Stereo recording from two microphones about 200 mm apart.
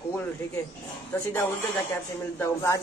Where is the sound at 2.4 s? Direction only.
15° left (ahead or behind).